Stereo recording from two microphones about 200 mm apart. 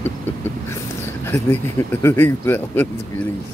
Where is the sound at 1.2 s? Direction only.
10° left (ahead or behind).